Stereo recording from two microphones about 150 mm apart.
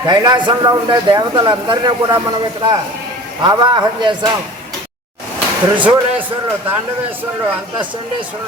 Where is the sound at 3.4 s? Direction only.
30° right (ahead or behind).